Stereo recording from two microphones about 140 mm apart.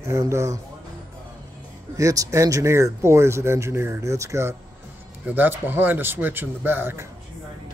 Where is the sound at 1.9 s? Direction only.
25° right (ahead or behind).